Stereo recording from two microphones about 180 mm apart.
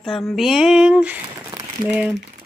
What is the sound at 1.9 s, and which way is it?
Speech, 5° right (ahead or behind).